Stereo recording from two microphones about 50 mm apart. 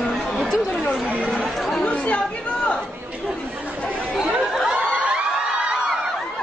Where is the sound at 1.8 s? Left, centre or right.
Left.